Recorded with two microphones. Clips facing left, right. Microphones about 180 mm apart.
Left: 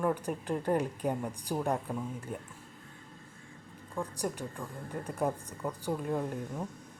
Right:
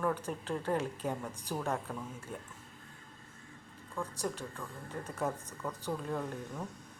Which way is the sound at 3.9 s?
15° left (ahead or behind).